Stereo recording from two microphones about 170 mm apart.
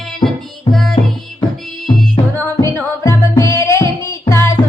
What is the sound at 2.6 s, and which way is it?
Music, 15° left (ahead or behind).